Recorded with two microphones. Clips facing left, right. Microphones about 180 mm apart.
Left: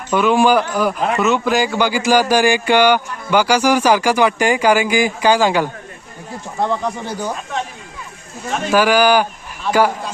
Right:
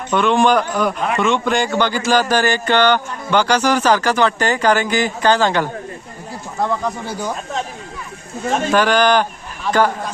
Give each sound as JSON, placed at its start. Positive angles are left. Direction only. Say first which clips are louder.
{"t": 0.1, "sound": "speech", "louder": "left 1 dB", "side_deg": 5}
{"t": 6.6, "sound": "speech", "louder": "left 1 dB", "side_deg": 20}
{"t": 8.7, "sound": "speech", "louder": "left 2 dB", "side_deg": 10}